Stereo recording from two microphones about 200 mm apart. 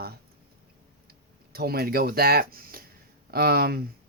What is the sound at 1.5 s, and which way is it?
Speech, 50° right (ahead or behind).